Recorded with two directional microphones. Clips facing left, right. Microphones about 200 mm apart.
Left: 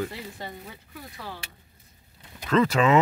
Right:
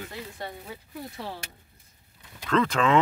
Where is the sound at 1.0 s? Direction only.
25° right (ahead or behind).